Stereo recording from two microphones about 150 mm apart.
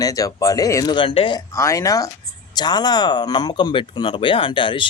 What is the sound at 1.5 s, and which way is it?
Speech, 20° left (ahead or behind).